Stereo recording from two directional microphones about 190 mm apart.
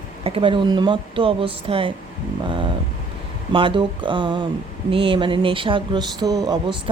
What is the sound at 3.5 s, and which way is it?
Speech, 25° right (ahead or behind).